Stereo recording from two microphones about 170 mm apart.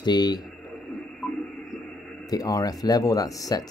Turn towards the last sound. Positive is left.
turn(degrees=20)  # may be behind; listen again after turning